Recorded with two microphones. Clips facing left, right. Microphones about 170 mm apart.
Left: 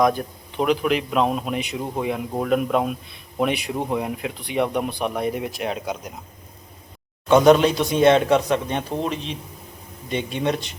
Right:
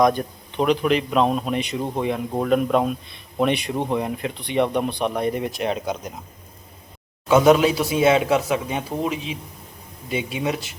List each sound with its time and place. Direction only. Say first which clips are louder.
0.0 s a man's voice: right 1 dB; 5° left (ahead or behind)
7.3 s a man's voice: left 1 dB; 5° right (ahead or behind)